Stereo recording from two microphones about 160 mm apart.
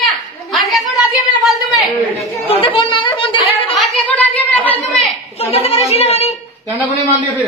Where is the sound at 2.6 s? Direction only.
30° left (ahead or behind).